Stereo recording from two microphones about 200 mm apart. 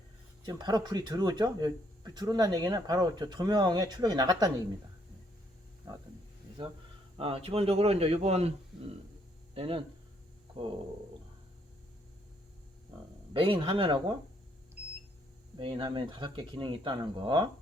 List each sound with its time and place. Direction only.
0.4 s speech: 20° right (ahead or behind)
7.2 s speech: 30° right (ahead or behind)
13.3 s speech: 25° right (ahead or behind)
15.5 s speech: 25° right (ahead or behind)